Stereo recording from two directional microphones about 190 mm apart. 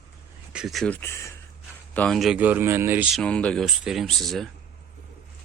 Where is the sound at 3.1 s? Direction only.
5° left (ahead or behind).